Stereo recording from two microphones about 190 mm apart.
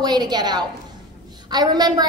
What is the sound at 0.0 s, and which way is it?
A woman's voice, 20° right (ahead or behind).